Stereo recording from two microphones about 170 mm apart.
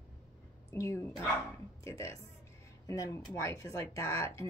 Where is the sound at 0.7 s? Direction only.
15° left (ahead or behind).